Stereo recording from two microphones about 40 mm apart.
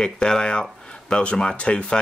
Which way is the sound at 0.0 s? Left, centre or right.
Centre.